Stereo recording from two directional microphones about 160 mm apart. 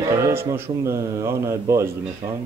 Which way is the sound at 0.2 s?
15° right (ahead or behind).